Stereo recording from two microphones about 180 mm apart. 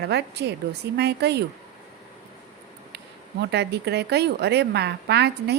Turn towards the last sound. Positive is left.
turn(degrees=-70)  # may be behind; listen again after turning